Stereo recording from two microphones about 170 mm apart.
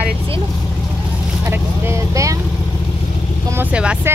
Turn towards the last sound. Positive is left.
turn(degrees=-10)  # may be behind; listen again after turning